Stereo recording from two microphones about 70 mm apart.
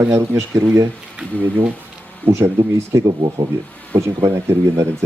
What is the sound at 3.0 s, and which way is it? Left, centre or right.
Speech, right.